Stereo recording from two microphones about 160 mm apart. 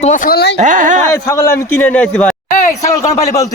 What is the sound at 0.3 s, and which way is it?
Speech, 75° left (ahead or behind).